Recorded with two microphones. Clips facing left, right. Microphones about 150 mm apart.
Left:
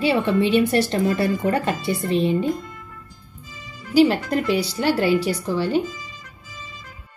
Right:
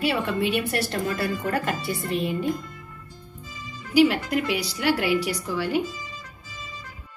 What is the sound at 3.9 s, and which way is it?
A woman's voice, 35° left (ahead or behind).